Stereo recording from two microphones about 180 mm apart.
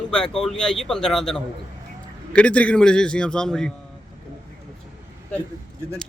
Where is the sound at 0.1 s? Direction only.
5° left (ahead or behind).